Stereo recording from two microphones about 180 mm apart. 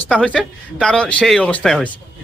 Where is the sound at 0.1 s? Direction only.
5° left (ahead or behind).